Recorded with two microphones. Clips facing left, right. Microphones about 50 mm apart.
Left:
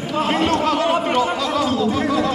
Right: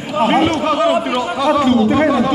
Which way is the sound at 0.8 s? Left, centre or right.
Centre.